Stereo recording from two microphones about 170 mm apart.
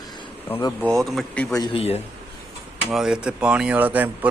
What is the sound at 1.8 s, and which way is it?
Speech, 35° left (ahead or behind).